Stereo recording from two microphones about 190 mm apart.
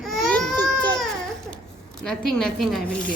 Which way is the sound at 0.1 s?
5° left (ahead or behind).